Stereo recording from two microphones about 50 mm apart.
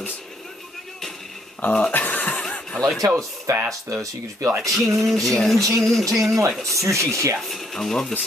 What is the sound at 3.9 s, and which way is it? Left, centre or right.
Speech, right.